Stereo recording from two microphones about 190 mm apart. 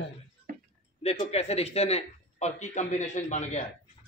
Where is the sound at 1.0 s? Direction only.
35° left (ahead or behind).